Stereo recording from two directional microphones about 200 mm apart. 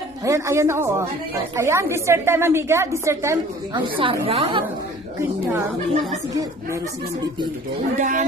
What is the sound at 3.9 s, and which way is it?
Speech, 25° right (ahead or behind).